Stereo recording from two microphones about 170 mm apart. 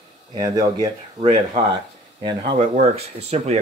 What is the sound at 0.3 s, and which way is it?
Speech, 20° right (ahead or behind).